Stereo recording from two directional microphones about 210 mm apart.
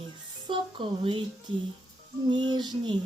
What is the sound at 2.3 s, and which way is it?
Speech, 20° right (ahead or behind).